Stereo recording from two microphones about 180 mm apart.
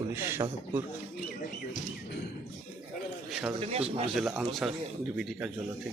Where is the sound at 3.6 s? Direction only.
35° right (ahead or behind).